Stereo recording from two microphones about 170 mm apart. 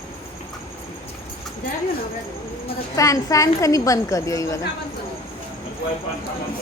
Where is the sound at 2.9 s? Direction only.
20° left (ahead or behind).